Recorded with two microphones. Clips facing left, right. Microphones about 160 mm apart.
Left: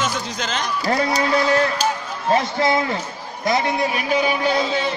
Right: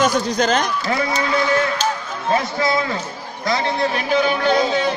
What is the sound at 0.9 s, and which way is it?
Speech, 35° left (ahead or behind).